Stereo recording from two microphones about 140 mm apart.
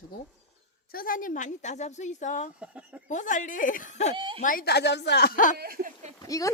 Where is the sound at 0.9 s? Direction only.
85° left; by 2.5 s 60° left (ahead or behind).